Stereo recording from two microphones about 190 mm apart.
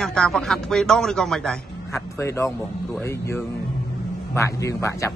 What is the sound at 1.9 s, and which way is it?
Speech, 15° left (ahead or behind).